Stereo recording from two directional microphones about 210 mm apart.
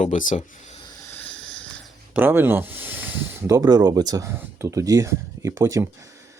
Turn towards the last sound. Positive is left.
turn(degrees=-15)  # may be behind; listen again after turning